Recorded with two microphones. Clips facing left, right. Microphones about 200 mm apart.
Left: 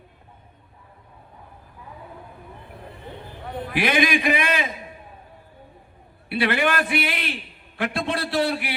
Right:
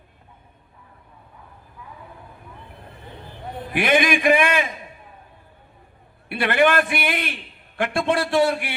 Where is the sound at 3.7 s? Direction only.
55° right (ahead or behind).